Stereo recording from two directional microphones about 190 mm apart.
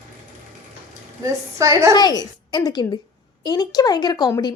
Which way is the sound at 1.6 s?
15° right (ahead or behind).